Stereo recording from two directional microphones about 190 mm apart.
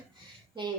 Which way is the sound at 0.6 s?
25° right (ahead or behind).